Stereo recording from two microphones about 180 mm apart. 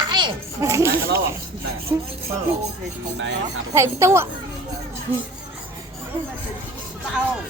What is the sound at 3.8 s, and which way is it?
Speech, 15° right (ahead or behind).